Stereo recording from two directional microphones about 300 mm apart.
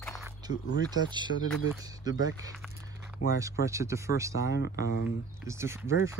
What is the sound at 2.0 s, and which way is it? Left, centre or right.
Speech, centre.